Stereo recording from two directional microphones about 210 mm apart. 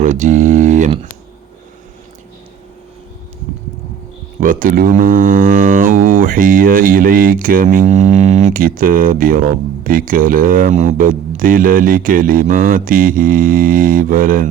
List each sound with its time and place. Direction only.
0.0 s speech: 35° right (ahead or behind)
4.4 s speech: 40° right (ahead or behind)